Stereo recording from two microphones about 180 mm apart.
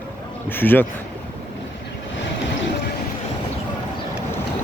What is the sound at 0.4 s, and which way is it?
Speech, 10° left (ahead or behind).